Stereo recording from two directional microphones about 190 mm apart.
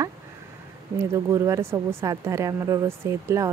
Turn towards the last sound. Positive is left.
turn(degrees=-15)  # may be behind; listen again after turning